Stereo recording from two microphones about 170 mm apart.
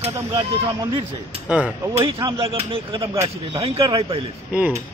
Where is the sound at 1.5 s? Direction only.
5° right (ahead or behind).